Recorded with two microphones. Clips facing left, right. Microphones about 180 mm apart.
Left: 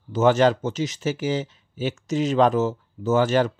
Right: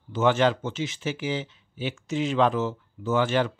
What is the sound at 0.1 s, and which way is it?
Speech, 40° left (ahead or behind).